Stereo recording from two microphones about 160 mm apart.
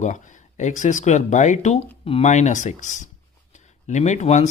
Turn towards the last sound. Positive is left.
turn(degrees=50)  # may be behind; listen again after turning